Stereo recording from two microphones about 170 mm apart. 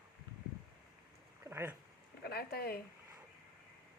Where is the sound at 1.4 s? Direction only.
15° right (ahead or behind).